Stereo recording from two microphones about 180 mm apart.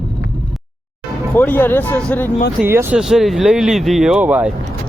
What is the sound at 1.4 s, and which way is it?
Speech, 10° left (ahead or behind).